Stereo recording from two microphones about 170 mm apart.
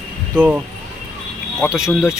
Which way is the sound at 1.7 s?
5° right (ahead or behind).